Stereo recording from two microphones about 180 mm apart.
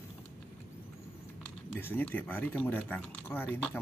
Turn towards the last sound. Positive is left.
turn(degrees=10)  # may be behind; listen again after turning